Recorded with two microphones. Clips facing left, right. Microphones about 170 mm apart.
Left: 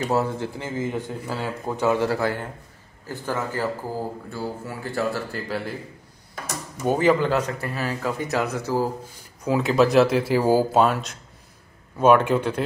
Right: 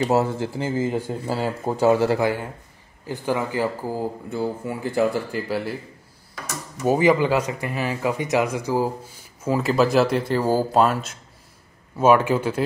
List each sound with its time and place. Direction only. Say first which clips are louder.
0.0 s a man's voice: right 3 dB; 30° right (ahead or behind)
2.1 s speech: right 3 dB; 10° right (ahead or behind)
6.8 s speech: right 2 dB; 10° right (ahead or behind)
9.4 s speech: even; centre (ahead or behind)
10.8 s speech: right 1 dB; centre (ahead or behind)